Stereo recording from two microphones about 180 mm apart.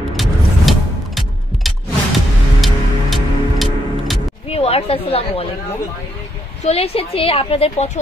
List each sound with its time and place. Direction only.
0.1 s music: centre (ahead or behind)
4.5 s a woman's voice: 35° left (ahead or behind)
6.6 s a woman's voice: 35° left (ahead or behind)